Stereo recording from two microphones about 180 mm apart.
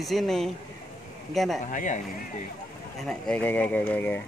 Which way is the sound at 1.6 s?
45° left (ahead or behind).